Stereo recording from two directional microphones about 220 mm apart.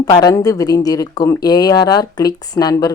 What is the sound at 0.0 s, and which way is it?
Speech, 15° left (ahead or behind).